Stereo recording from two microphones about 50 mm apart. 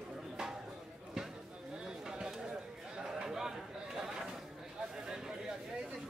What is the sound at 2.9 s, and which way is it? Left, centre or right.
Chatter, centre.